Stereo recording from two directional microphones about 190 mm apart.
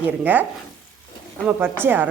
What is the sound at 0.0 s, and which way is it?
Speech, 10° right (ahead or behind).